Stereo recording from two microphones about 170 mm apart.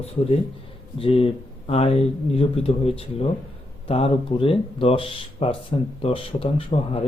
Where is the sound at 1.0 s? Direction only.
35° left (ahead or behind).